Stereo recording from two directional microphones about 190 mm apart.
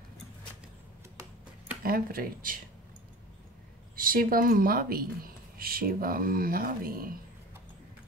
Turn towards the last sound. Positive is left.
turn(degrees=-50)  # may be behind; listen again after turning